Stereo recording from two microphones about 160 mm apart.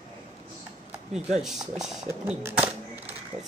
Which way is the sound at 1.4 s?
Centre (ahead or behind).